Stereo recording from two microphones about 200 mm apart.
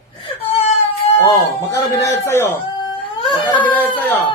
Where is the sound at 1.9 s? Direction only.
15° left (ahead or behind).